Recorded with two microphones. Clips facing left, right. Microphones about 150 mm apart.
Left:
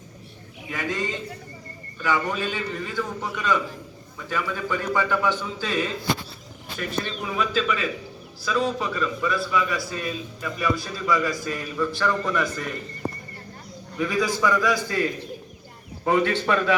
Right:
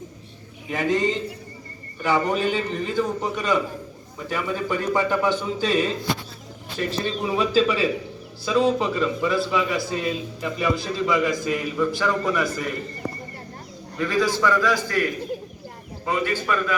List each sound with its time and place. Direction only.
0.7 s a man's voice: 20° right (ahead or behind)
6.7 s a man's voice: 30° right (ahead or behind); by 12.7 s 5° right (ahead or behind)
14.0 s a man's voice: 10° left (ahead or behind)
16.0 s a man's voice: 60° left (ahead or behind)